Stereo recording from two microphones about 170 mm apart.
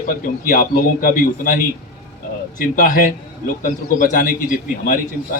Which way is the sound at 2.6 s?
50° left (ahead or behind).